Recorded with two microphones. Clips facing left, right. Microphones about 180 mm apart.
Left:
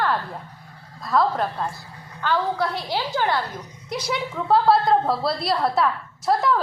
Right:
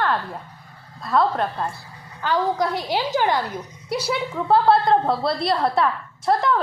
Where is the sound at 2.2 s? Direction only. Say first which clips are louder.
Right 2 dB; 15° right (ahead or behind).